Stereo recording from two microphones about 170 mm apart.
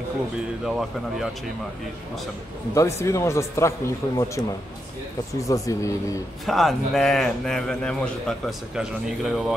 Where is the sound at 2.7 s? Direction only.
15° left (ahead or behind).